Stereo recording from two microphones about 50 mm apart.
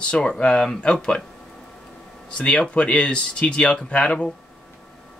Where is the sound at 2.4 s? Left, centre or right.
Left.